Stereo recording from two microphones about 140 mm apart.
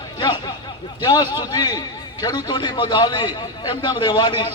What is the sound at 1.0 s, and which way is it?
A man's voice, 25° left (ahead or behind).